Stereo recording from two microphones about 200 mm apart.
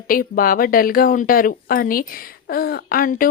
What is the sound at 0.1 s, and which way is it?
Speech, 45° left (ahead or behind).